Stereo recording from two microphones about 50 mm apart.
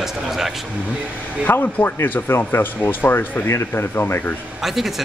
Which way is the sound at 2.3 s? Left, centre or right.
Left.